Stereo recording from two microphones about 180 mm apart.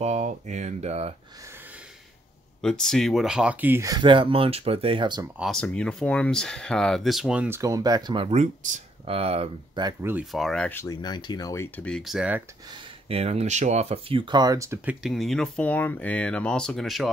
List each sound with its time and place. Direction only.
0.0 s speech: 40° right (ahead or behind)
2.6 s speech: 5° left (ahead or behind); by 5.2 s 25° right (ahead or behind)
5.4 s speech: 5° left (ahead or behind); by 9.9 s 30° right (ahead or behind)
10.3 s speech: centre (ahead or behind)
12.7 s speech: 35° right (ahead or behind); by 15.0 s 15° right (ahead or behind)
15.0 s speech: centre (ahead or behind)